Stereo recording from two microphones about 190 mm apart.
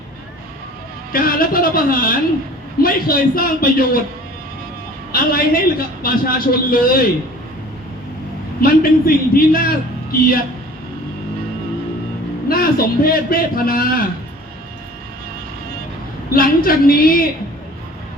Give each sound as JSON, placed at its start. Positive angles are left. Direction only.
{"t": 1.1, "sound": "a man's voice", "side_deg": 50}
{"t": 5.1, "sound": "a man's voice", "side_deg": 50}
{"t": 8.6, "sound": "a man's voice", "side_deg": 50}
{"t": 12.5, "sound": "a man's voice", "side_deg": 50}
{"t": 16.3, "sound": "a man's voice", "side_deg": 50}